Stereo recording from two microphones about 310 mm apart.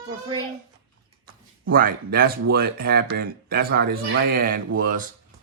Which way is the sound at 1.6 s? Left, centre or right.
Right.